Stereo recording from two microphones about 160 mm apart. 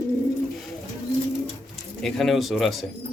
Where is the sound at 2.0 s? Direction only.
Centre (ahead or behind).